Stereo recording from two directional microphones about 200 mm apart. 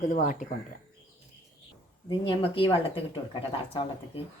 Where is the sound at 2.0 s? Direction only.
25° left (ahead or behind).